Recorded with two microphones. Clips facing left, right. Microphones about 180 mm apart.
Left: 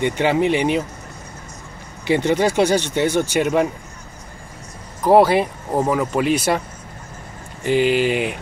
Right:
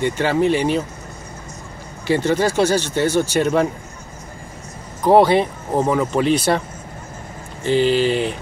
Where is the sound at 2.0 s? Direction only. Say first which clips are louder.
Even; 20° left (ahead or behind).